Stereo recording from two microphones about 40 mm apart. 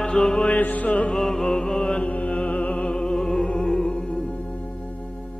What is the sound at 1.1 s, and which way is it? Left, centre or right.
Music, centre.